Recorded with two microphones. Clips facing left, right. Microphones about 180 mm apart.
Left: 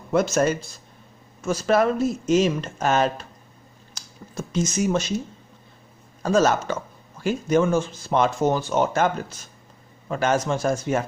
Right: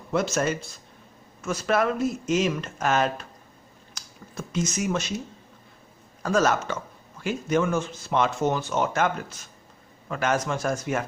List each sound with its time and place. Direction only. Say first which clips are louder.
0.1 s speech: left 4 dB; 45° left (ahead or behind)
1.4 s speech: left 4 dB; 35° left (ahead or behind)
3.9 s a sound: left 4 dB; 30° left (ahead or behind)
6.2 s speech: left 3 dB; 30° left (ahead or behind)
10.1 s speech: left 3 dB; 30° left (ahead or behind)